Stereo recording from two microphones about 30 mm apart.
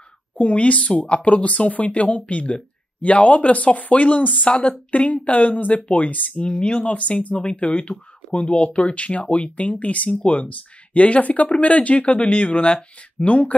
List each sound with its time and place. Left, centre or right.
0.4 s speech: left
4.5 s speech: left
6.4 s speech: left